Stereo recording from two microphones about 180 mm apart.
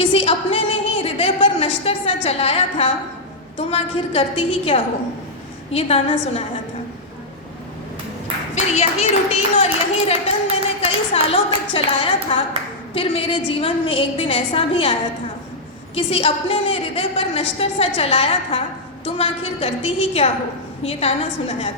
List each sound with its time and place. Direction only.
0.0 s a sound: 30° left (ahead or behind)
3.7 s a woman's voice: 30° left (ahead or behind)
8.5 s a woman's voice: 40° left (ahead or behind)
16.0 s a woman's voice: 35° left (ahead or behind)